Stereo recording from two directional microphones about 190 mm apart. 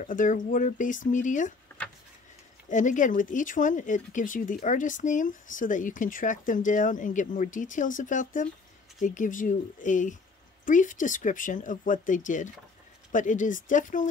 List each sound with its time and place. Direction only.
0.0 s speech: 45° left (ahead or behind)
1.7 s a sound: 10° left (ahead or behind)
2.7 s speech: 40° left (ahead or behind)